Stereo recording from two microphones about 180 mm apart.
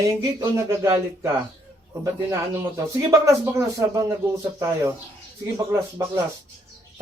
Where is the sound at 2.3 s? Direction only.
15° right (ahead or behind).